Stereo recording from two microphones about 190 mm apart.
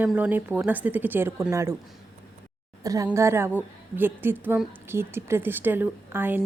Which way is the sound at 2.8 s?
20° right (ahead or behind).